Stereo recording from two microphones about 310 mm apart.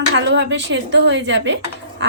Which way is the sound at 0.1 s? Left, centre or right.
Right.